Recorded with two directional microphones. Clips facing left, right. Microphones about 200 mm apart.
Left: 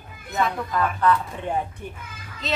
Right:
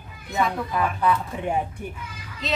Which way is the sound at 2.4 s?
Centre (ahead or behind).